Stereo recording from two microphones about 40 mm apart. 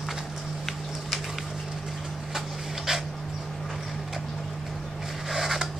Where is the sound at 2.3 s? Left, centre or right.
Centre.